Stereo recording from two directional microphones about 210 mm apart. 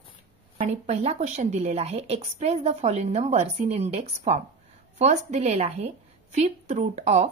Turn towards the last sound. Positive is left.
turn(degrees=-30)  # may be behind; listen again after turning